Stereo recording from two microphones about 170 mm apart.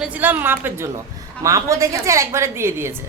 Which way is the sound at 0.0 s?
10° right (ahead or behind).